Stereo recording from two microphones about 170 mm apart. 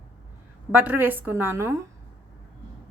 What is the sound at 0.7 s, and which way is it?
A woman's voice, 10° right (ahead or behind).